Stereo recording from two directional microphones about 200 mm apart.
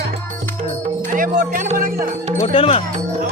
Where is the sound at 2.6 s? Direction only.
25° left (ahead or behind).